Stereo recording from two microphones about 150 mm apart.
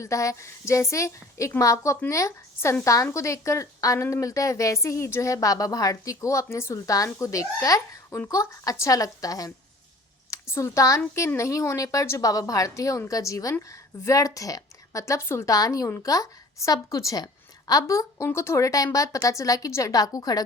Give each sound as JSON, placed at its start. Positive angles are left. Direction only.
{"t": 0.0, "sound": "a woman's voice", "side_deg": 20}